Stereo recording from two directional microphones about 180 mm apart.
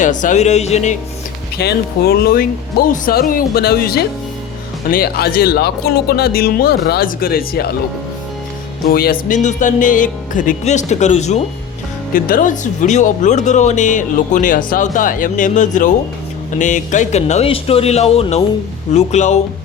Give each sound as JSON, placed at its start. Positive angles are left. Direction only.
{"t": 0.0, "sound": "speech", "side_deg": 45}
{"t": 1.5, "sound": "speech", "side_deg": 60}
{"t": 8.9, "sound": "speech", "side_deg": 55}
{"t": 9.3, "sound": "speech", "side_deg": 45}
{"t": 12.1, "sound": "speech", "side_deg": 50}